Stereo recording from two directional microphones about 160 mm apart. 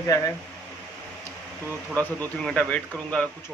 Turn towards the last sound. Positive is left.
turn(degrees=5)  # may be behind; listen again after turning